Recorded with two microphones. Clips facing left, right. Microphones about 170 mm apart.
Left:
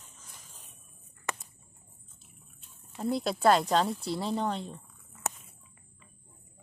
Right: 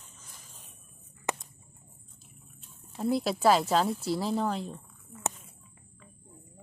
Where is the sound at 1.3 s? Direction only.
20° right (ahead or behind).